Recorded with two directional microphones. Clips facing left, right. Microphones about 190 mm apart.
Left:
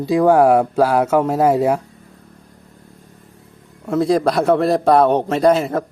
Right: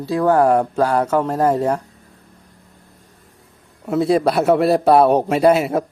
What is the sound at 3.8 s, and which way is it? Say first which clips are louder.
A man's voice: even; 5° right (ahead or behind).